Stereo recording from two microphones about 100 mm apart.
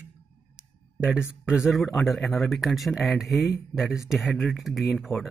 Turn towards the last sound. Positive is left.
turn(degrees=0)  # may be behind; listen again after turning